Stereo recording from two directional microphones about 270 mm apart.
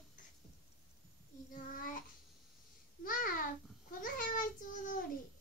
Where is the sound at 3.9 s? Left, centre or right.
Left.